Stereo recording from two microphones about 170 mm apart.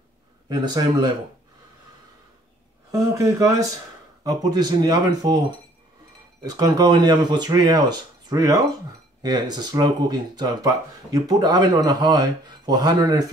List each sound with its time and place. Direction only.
0.5 s speech: 25° right (ahead or behind)
2.9 s speech: 20° right (ahead or behind)
6.5 s speech: 20° right (ahead or behind)